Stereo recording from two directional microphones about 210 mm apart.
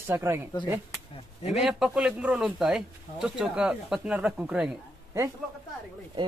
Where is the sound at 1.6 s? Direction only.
Centre (ahead or behind).